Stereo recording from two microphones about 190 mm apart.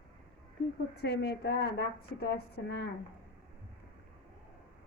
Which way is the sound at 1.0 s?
60° left (ahead or behind).